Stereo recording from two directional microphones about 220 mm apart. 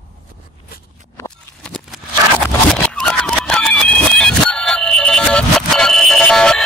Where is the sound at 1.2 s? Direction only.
5° left (ahead or behind).